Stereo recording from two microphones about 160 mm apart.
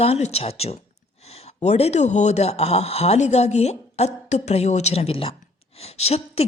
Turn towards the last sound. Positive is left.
turn(degrees=40)  # may be behind; listen again after turning